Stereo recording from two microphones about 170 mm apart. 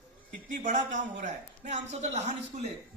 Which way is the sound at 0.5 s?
50° right (ahead or behind).